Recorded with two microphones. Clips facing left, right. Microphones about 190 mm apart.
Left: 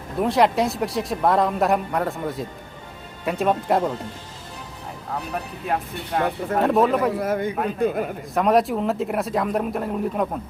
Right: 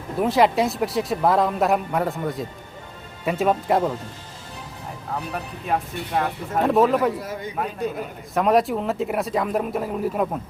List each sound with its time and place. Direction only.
0.2 s a man's voice: centre (ahead or behind)
5.3 s a man's voice: centre (ahead or behind)
7.2 s speech: 55° left (ahead or behind)
8.4 s a man's voice: centre (ahead or behind)